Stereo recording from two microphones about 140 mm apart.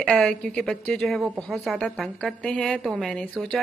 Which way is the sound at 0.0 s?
5° left (ahead or behind).